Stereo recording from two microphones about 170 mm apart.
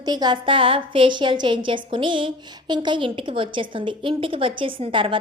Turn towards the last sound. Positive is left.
turn(degrees=-30)  # may be behind; listen again after turning